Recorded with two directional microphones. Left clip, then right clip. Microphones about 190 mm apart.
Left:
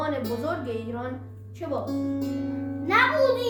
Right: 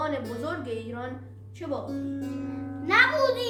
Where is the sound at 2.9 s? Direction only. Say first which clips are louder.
Left 1 dB; 15° left (ahead or behind).